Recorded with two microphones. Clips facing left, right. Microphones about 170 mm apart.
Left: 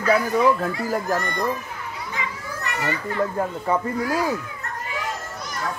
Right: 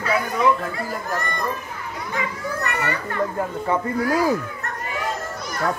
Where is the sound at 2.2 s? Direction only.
60° right (ahead or behind).